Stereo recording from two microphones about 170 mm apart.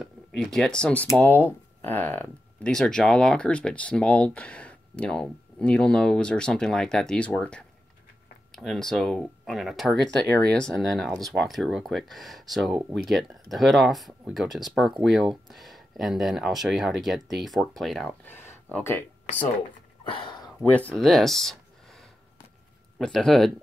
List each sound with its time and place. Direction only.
0.0 s speech: centre (ahead or behind)
20.1 s a sound: 25° left (ahead or behind)
20.7 s speech: 5° left (ahead or behind)